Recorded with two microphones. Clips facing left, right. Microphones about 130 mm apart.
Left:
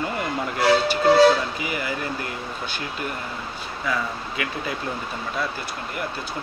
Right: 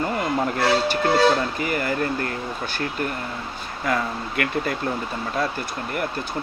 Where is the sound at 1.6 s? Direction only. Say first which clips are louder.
Right 4 dB; 50° right (ahead or behind).